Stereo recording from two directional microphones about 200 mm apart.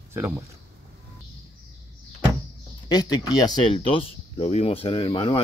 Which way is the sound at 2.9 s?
20° left (ahead or behind).